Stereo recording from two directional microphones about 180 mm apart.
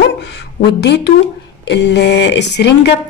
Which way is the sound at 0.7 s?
70° left (ahead or behind).